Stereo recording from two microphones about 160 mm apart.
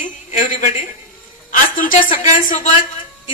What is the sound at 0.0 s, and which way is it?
A woman's voice, 55° left (ahead or behind).